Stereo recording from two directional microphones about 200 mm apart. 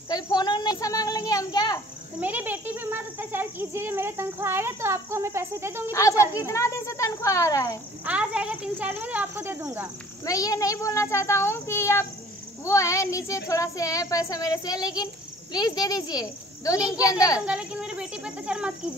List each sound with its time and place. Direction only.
0.1 s a sound: 20° left (ahead or behind)
2.1 s a child's voice: 10° right (ahead or behind)
5.9 s speech: 15° left (ahead or behind)
6.1 s a child's voice: 10° right (ahead or behind)
6.4 s speech: 15° left (ahead or behind)
8.0 s a child's voice: 5° right (ahead or behind)
10.2 s a child's voice: 15° left (ahead or behind)
17.5 s speech: 5° right (ahead or behind)